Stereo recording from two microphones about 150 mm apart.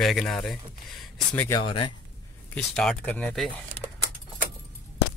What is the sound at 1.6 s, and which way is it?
Speech, 35° left (ahead or behind).